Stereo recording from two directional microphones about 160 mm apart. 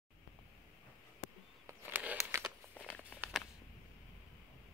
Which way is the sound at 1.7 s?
10° right (ahead or behind).